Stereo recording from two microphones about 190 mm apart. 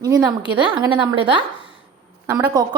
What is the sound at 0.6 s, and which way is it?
A woman's voice, 25° right (ahead or behind).